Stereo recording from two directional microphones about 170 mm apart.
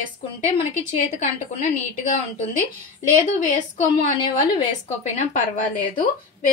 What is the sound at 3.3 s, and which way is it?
Speech, 45° left (ahead or behind).